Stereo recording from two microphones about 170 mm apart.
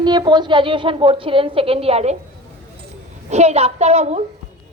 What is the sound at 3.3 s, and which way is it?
Speech, 40° right (ahead or behind).